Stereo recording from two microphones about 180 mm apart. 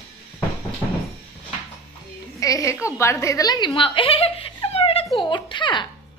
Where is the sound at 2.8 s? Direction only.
15° left (ahead or behind).